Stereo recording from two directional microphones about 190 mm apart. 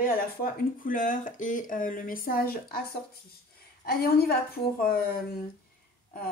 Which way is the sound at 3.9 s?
55° left (ahead or behind).